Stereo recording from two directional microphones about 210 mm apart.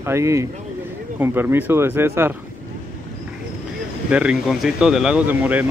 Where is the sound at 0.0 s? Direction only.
15° right (ahead or behind).